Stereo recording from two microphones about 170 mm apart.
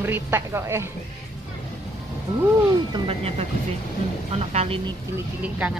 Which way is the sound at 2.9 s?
35° right (ahead or behind).